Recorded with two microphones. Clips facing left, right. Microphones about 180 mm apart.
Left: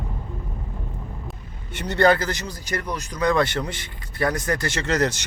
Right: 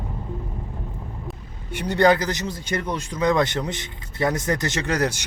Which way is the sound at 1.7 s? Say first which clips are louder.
Right 1 dB; 10° right (ahead or behind).